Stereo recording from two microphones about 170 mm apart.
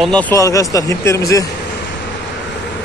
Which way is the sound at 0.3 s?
20° left (ahead or behind).